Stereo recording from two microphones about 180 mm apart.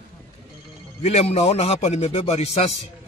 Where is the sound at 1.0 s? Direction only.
35° left (ahead or behind).